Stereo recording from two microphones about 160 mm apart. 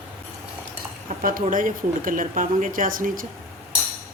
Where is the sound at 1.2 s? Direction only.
60° right (ahead or behind).